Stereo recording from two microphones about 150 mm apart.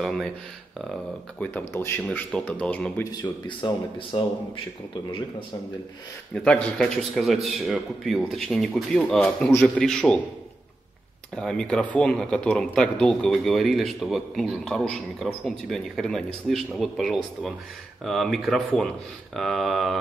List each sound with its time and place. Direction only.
0.0 s speech: centre (ahead or behind)
1.4 s speech: 15° left (ahead or behind)
3.0 s speech: 30° left (ahead or behind)
6.3 s speech: 5° left (ahead or behind)
11.3 s speech: 5° left (ahead or behind)